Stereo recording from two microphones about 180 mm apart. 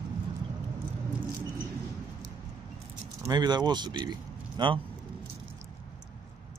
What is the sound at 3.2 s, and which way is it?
Speech, 25° right (ahead or behind).